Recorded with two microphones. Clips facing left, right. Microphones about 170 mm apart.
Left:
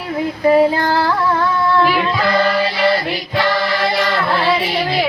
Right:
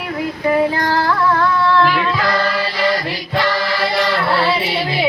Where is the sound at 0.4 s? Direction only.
25° left (ahead or behind).